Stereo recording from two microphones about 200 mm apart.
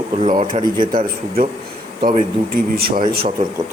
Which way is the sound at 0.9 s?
45° right (ahead or behind).